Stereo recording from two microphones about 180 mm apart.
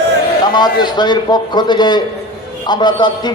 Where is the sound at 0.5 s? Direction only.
25° left (ahead or behind).